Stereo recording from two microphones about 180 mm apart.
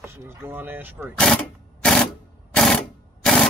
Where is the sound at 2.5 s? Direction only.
5° left (ahead or behind).